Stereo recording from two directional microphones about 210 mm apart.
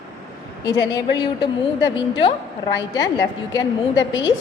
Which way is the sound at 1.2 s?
20° left (ahead or behind).